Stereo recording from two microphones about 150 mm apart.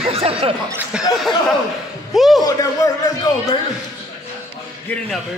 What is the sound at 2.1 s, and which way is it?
Speech, centre (ahead or behind).